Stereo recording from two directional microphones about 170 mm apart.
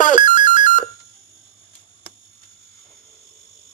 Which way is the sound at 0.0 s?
50° left (ahead or behind).